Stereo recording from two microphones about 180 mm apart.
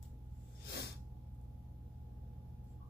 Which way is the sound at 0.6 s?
65° left (ahead or behind).